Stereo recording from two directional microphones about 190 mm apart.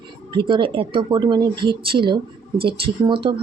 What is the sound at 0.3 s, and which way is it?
Speech, 25° right (ahead or behind).